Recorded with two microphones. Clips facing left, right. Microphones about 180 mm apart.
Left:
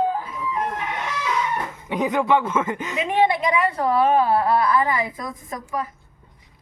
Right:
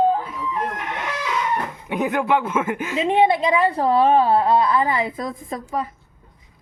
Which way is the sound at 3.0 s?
25° right (ahead or behind).